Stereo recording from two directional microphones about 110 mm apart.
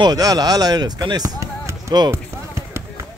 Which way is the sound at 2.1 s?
25° right (ahead or behind).